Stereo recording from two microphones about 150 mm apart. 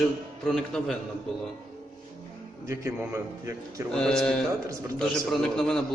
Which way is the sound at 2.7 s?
20° right (ahead or behind).